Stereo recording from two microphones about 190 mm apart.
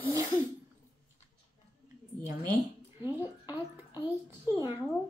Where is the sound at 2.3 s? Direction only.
20° right (ahead or behind).